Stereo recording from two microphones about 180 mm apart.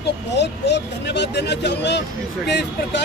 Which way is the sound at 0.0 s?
70° left (ahead or behind).